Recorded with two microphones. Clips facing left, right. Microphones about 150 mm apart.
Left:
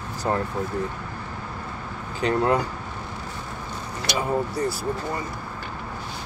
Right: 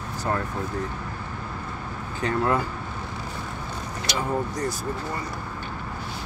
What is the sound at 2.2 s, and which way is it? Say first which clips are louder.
Speech: left 2 dB; 20° left (ahead or behind).